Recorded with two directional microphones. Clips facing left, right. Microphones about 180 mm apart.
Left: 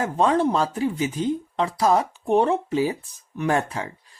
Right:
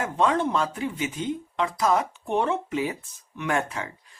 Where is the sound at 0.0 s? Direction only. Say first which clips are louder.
Left 3 dB; 35° left (ahead or behind).